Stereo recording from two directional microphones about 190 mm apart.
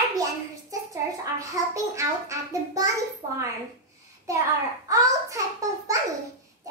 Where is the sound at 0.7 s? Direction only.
15° right (ahead or behind).